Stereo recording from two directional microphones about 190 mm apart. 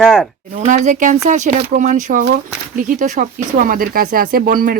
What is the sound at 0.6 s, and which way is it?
Speech, 40° right (ahead or behind).